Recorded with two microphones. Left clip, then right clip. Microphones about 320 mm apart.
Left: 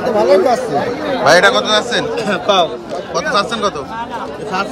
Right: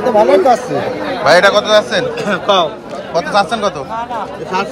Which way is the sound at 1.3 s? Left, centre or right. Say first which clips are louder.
Right 2 dB; centre.